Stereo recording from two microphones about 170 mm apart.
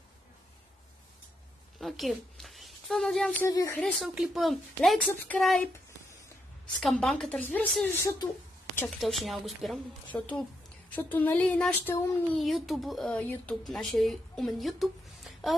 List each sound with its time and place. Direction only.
1.8 s speech: centre (ahead or behind)
3.4 s a sound: 20° left (ahead or behind)
3.8 s speech: centre (ahead or behind)
9.0 s speech: centre (ahead or behind)
10.1 s a sound: 10° left (ahead or behind)
12.4 s speech: centre (ahead or behind)